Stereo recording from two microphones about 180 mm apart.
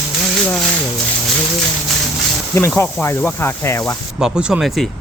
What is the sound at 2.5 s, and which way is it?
Speech, 10° left (ahead or behind).